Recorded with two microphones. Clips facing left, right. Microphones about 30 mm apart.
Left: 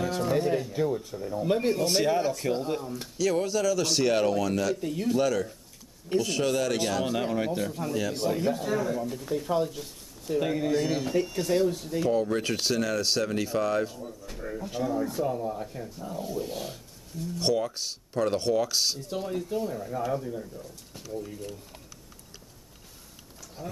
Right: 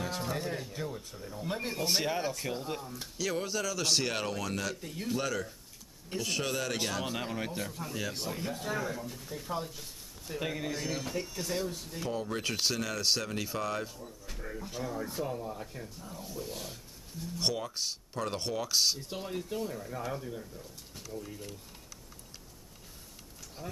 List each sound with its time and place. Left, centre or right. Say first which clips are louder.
0.0 s music: left 7 dB; centre
0.3 s speech: left 10 dB; centre
2.8 s speech: left 6 dB; centre
3.2 s speech: left 7 dB; centre
8.3 s speech: left 9 dB; centre
9.1 s speech: left 10 dB; centre
11.1 s speech: left 10 dB; left; by 15.9 s centre
16.0 s speech: left 11 dB; centre
17.4 s speech: left 6 dB; centre
23.6 s speech: left 5 dB; centre